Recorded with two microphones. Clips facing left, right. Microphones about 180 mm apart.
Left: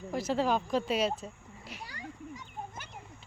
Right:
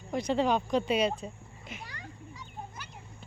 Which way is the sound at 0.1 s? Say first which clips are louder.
Right 2 dB; 5° left (ahead or behind).